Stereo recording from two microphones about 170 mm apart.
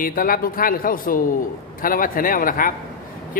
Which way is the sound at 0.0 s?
55° left (ahead or behind).